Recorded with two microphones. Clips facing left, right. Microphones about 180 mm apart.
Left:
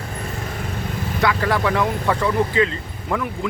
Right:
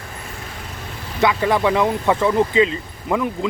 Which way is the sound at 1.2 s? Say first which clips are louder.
Right 3 dB; 20° right (ahead or behind).